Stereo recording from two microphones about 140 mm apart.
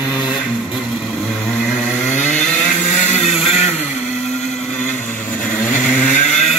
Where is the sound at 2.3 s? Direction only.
5° left (ahead or behind).